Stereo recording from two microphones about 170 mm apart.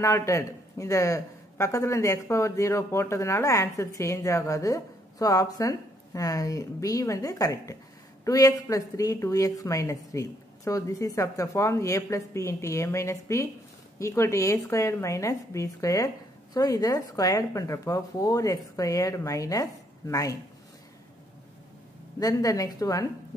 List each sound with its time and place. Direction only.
0.0 s a woman's voice: 15° left (ahead or behind)
22.2 s speech: 20° left (ahead or behind)